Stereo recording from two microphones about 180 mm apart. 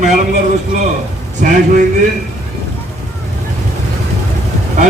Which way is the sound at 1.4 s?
45° right (ahead or behind).